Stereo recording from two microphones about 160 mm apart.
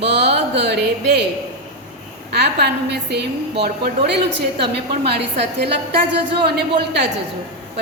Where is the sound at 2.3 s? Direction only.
90° right.